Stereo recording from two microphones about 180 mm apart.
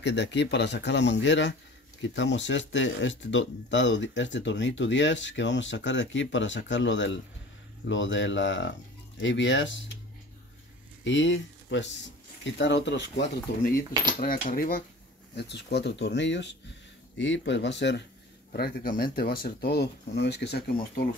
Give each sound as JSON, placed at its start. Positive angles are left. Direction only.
{"t": 0.0, "sound": "speech", "side_deg": 75}
{"t": 11.1, "sound": "speech", "side_deg": 90}
{"t": 14.2, "sound": "speech", "side_deg": 50}
{"t": 15.3, "sound": "speech", "side_deg": 70}
{"t": 18.5, "sound": "speech", "side_deg": 55}